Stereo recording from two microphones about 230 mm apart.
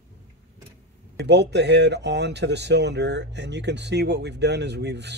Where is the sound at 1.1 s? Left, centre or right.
Right.